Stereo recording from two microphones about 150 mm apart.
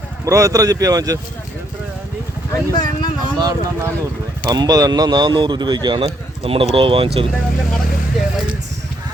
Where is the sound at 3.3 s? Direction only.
25° right (ahead or behind).